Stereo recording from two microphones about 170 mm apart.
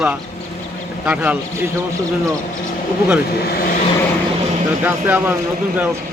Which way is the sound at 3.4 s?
60° left (ahead or behind).